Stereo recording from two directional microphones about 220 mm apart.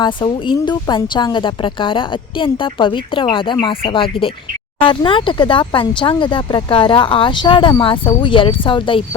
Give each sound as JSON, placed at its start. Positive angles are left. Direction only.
{"t": 0.0, "sound": "speech", "side_deg": 20}